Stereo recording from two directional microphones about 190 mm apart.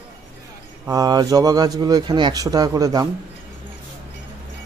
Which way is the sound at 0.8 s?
20° right (ahead or behind).